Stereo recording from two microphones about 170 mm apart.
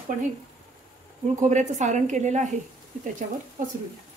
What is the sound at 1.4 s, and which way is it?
A woman's voice, 45° right (ahead or behind).